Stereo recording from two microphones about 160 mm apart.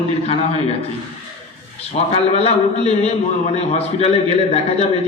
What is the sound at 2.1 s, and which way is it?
A man's voice, 40° left (ahead or behind).